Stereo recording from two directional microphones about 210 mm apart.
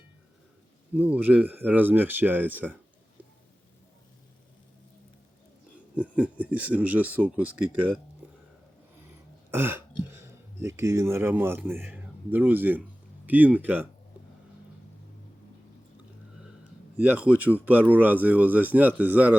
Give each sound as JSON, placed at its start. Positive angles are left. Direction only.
{"t": 0.9, "sound": "speech", "side_deg": -10}
{"t": 6.0, "sound": "a sound", "side_deg": -5}
{"t": 6.4, "sound": "speech", "side_deg": -5}
{"t": 9.5, "sound": "speech", "side_deg": -10}
{"t": 17.0, "sound": "speech", "side_deg": -5}